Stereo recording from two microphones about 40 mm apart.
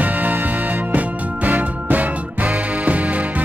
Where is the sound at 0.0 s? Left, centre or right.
Right.